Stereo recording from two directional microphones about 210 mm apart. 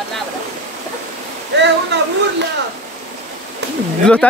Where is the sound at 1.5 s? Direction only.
55° right (ahead or behind).